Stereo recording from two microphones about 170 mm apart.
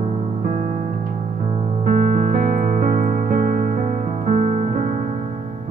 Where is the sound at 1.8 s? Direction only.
50° right (ahead or behind).